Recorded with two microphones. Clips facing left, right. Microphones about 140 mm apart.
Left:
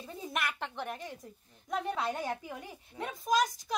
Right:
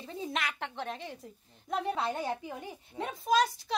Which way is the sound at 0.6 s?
65° right (ahead or behind).